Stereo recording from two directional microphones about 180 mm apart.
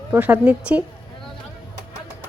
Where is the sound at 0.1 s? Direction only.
10° right (ahead or behind).